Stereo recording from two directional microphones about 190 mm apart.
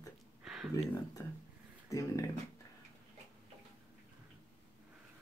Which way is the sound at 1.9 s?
15° left (ahead or behind).